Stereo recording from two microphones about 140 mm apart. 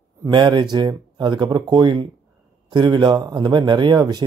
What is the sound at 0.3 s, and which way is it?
Speech, 35° right (ahead or behind).